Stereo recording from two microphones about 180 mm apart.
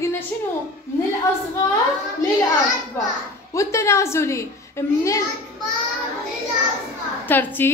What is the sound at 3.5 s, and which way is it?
A woman's voice, 15° left (ahead or behind).